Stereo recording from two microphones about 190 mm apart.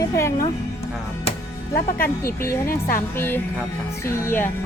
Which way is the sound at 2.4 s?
50° left (ahead or behind).